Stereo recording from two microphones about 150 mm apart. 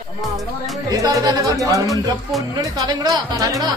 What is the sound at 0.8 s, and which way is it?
Music, 25° right (ahead or behind).